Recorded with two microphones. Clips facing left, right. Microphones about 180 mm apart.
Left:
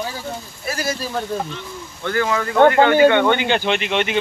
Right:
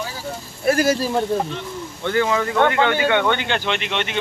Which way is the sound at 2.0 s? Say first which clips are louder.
Right 1 dB; 20° right (ahead or behind).